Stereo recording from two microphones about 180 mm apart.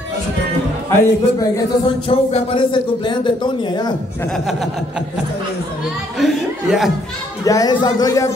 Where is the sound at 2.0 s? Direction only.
30° left (ahead or behind).